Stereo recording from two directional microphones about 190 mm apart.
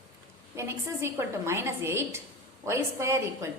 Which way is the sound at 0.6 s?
15° right (ahead or behind).